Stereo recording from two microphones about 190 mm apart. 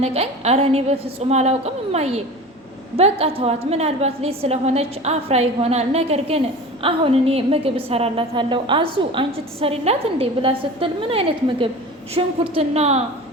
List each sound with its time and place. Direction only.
0.0 s a woman's voice: 35° right (ahead or behind)